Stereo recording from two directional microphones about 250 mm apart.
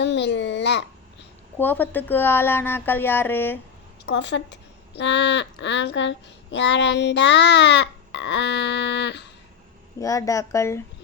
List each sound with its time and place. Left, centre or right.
0.0 s babbling: left
1.5 s a woman's voice: centre
4.0 s a woman's voice: left
10.0 s a woman's voice: centre